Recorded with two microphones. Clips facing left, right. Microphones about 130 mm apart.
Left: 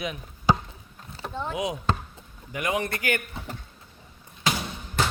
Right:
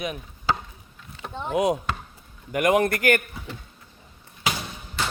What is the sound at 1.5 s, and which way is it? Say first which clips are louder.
Speech: right 6 dB; 55° right (ahead or behind).